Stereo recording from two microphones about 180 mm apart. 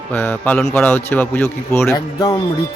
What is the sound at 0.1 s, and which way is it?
A man's voice, 10° left (ahead or behind).